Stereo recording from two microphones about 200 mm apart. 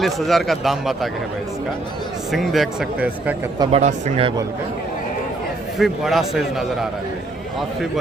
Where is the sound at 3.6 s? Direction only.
30° right (ahead or behind).